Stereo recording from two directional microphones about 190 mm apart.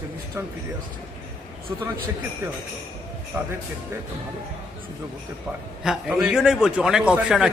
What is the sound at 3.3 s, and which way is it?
Speech, 10° right (ahead or behind).